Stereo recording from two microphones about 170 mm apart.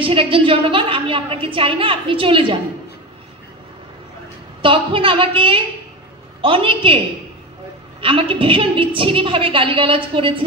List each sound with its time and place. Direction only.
0.0 s a woman's voice: 30° right (ahead or behind)
4.6 s a woman's voice: 30° right (ahead or behind)
8.0 s a woman's voice: 30° right (ahead or behind)